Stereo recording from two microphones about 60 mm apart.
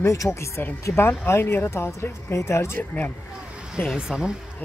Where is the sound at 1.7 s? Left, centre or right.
Left.